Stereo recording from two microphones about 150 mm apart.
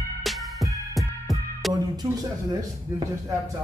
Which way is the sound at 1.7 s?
25° right (ahead or behind).